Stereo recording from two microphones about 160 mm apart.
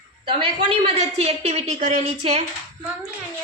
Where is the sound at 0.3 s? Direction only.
35° right (ahead or behind).